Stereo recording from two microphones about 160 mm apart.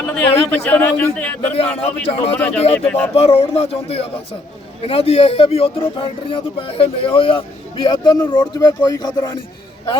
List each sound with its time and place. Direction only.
0.1 s speech: 10° left (ahead or behind)
1.5 s speech: 40° left (ahead or behind)
2.7 s speech: 5° left (ahead or behind)
3.2 s speech: 40° left (ahead or behind); by 9.3 s 25° left (ahead or behind)